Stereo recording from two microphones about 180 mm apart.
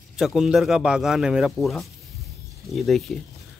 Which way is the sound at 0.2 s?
Centre (ahead or behind).